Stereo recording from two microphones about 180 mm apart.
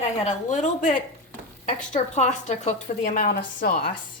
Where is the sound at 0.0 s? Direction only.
40° left (ahead or behind).